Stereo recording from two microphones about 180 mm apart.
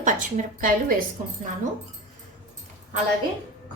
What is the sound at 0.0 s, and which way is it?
Speech, 45° right (ahead or behind).